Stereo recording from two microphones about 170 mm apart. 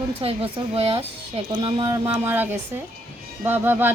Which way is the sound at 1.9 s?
15° right (ahead or behind).